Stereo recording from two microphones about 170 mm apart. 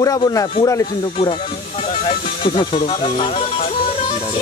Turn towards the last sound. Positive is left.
turn(degrees=35)  # may be behind; listen again after turning